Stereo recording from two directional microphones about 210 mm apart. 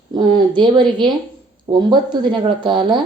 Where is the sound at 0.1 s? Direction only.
20° right (ahead or behind).